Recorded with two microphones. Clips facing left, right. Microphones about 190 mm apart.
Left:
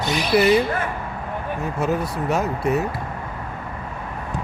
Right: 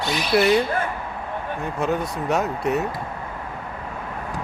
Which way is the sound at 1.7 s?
5° left (ahead or behind).